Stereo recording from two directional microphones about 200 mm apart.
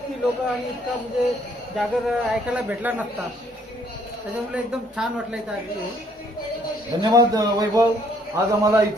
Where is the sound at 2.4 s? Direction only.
5° right (ahead or behind).